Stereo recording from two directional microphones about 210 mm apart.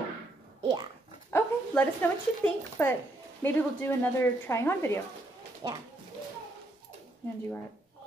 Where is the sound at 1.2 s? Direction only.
10° left (ahead or behind).